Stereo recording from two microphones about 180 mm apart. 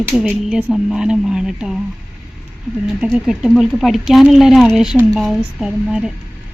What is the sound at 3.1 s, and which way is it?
Speech, 5° right (ahead or behind).